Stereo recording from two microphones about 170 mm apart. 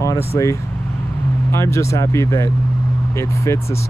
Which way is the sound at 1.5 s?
15° left (ahead or behind).